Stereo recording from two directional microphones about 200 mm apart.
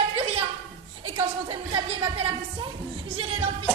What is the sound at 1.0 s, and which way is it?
A woman's voice, 25° right (ahead or behind).